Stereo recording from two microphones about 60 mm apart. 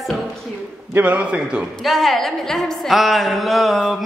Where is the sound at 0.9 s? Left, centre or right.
Right.